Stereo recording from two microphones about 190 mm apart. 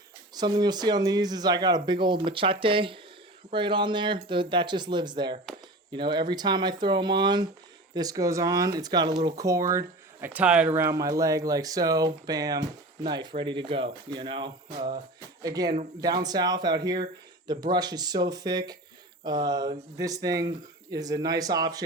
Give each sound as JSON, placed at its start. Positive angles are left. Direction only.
{"t": 0.3, "sound": "speech", "side_deg": -20}